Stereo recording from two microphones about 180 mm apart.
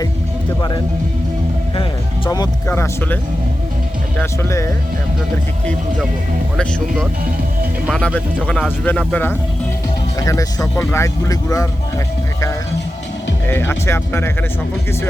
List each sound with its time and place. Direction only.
1.7 s speech: 25° left (ahead or behind)
4.2 s speech: 15° left (ahead or behind)
6.6 s speech: 5° left (ahead or behind)
13.5 s speech: 10° left (ahead or behind)